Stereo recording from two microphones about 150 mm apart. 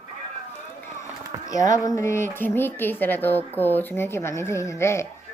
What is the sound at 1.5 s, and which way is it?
Speech, 20° left (ahead or behind).